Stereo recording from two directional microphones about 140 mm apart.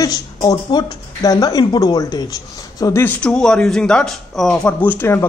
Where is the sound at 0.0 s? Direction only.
25° left (ahead or behind).